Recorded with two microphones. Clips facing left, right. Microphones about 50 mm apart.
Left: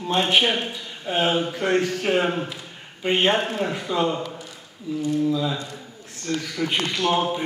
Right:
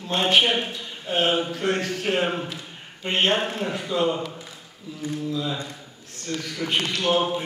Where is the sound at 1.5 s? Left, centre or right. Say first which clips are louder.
Left 3 dB; centre.